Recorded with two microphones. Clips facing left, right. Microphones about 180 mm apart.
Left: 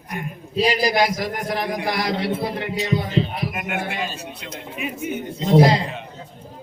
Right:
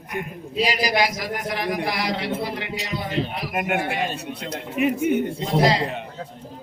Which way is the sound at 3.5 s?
50° right (ahead or behind).